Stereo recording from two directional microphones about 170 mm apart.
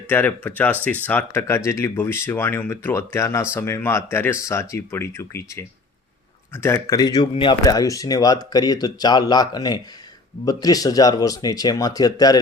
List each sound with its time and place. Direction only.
0.1 s speech: 10° left (ahead or behind)
6.6 s speech: 15° left (ahead or behind)